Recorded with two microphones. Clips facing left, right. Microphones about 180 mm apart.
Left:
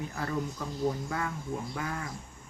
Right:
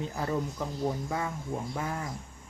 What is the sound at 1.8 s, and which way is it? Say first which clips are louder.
Speech: right 2 dB; 20° right (ahead or behind).